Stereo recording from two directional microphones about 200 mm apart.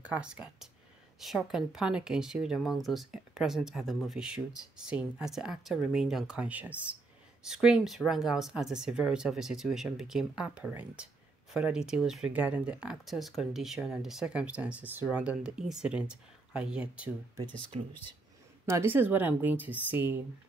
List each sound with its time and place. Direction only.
0.0 s speech: 5° right (ahead or behind)
17.4 s speech: 20° right (ahead or behind)
18.7 s a woman's voice: 10° right (ahead or behind)